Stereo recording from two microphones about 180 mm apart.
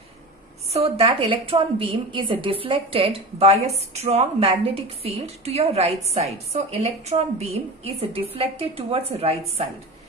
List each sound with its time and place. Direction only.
0.7 s a woman's voice: 35° right (ahead or behind)